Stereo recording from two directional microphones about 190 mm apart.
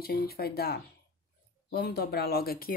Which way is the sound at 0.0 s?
55° left (ahead or behind).